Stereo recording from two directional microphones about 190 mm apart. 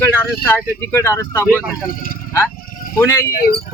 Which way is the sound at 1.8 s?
50° left (ahead or behind).